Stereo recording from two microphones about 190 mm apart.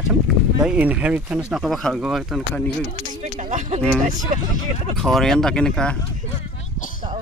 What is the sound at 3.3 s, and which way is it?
Speech, 40° right (ahead or behind).